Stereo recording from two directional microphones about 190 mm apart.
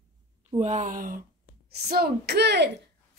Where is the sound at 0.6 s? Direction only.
40° right (ahead or behind).